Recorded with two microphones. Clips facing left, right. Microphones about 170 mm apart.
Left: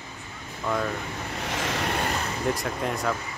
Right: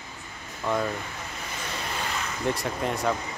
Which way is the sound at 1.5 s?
90° left.